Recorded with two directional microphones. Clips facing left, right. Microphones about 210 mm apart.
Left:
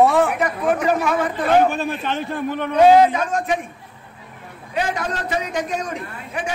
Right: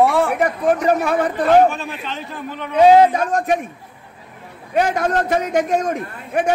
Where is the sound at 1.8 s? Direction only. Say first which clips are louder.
Left 5 dB; 55° left (ahead or behind).